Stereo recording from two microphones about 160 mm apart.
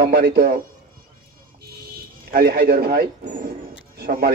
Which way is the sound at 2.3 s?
80° right.